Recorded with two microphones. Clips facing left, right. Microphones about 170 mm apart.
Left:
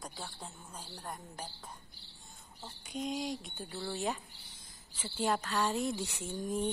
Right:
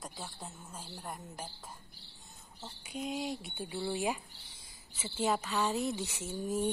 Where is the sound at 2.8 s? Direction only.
5° right (ahead or behind).